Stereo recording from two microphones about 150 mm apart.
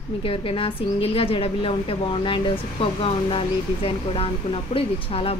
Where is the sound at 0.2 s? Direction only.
35° left (ahead or behind).